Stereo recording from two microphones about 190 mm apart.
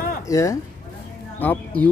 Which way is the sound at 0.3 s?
15° left (ahead or behind).